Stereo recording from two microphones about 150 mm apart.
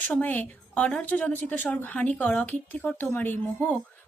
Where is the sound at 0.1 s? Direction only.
10° left (ahead or behind).